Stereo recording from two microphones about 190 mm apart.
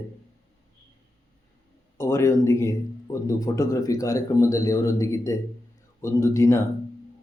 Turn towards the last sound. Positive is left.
turn(degrees=15)  # may be behind; listen again after turning